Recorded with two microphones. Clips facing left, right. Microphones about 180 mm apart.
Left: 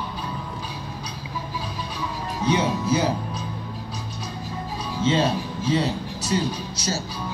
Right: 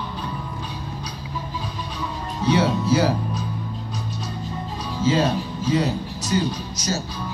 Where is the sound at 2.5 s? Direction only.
15° left (ahead or behind).